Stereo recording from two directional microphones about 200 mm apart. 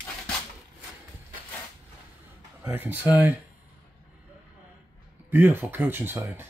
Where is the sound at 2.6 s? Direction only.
10° right (ahead or behind).